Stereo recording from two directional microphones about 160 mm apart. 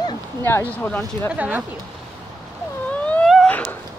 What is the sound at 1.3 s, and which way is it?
Speech, 10° right (ahead or behind).